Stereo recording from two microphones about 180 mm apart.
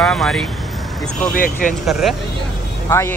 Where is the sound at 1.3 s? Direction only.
50° left (ahead or behind).